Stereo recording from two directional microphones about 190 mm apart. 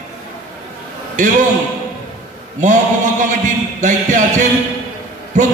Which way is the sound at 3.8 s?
40° right (ahead or behind).